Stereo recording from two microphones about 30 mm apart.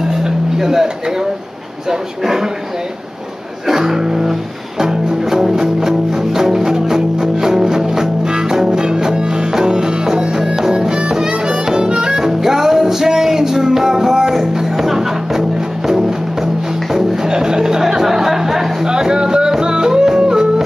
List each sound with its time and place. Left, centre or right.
0.0 s music: centre
1.9 s speech: centre
3.6 s music: centre
11.0 s harmonica: right
12.3 s music: centre
16.9 s music: centre
18.9 s music: right